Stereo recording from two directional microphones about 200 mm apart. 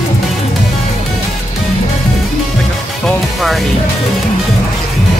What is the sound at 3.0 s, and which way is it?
Music, centre (ahead or behind).